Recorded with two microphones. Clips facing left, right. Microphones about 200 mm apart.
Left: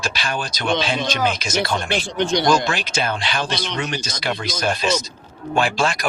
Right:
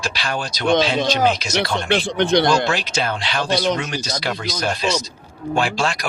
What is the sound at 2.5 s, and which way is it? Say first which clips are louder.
Speech: right 1 dB; 50° left (ahead or behind).